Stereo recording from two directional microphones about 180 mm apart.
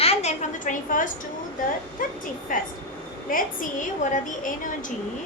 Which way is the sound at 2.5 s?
50° left (ahead or behind).